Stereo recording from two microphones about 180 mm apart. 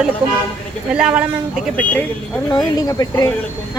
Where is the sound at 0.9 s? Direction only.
5° right (ahead or behind).